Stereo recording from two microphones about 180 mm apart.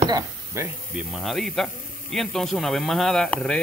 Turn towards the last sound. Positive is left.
turn(degrees=0)  # may be behind; listen again after turning